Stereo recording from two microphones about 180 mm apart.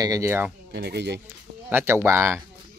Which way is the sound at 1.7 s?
10° right (ahead or behind).